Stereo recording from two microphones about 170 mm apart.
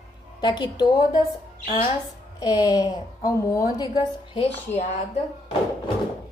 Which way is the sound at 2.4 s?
20° left (ahead or behind).